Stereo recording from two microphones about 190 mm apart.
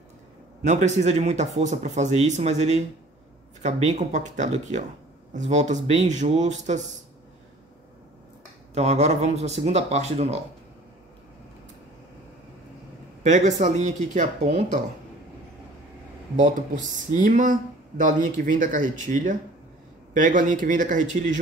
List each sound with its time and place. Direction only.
0.7 s speech: 40° right (ahead or behind)
8.7 s speech: 35° right (ahead or behind)
13.2 s speech: 40° right (ahead or behind)
16.3 s speech: 40° right (ahead or behind)